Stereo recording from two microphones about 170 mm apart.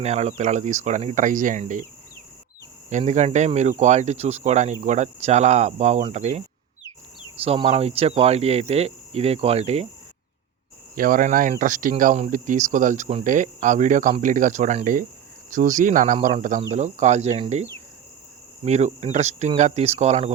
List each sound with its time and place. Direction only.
0.0 s speech: 40° right (ahead or behind)
3.0 s speech: 40° right (ahead or behind)
7.4 s speech: 35° right (ahead or behind)
10.9 s speech: 55° right (ahead or behind); by 20.3 s 40° right (ahead or behind)